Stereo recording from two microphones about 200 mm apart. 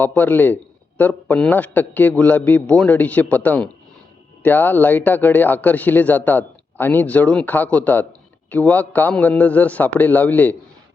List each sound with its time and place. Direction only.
0.0 s a man's voice: 10° left (ahead or behind)